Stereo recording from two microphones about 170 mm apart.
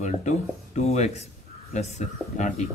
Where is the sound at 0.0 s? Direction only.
45° left (ahead or behind).